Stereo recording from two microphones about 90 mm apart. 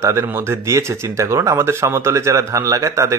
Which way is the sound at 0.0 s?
30° right (ahead or behind).